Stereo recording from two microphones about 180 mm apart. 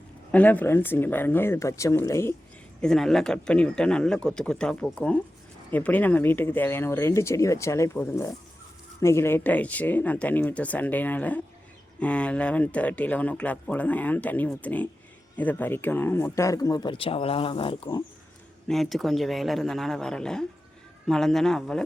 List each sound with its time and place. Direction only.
0.3 s speech: 10° left (ahead or behind)
2.8 s speech: centre (ahead or behind); by 18.0 s 30° left (ahead or behind)
18.7 s speech: centre (ahead or behind)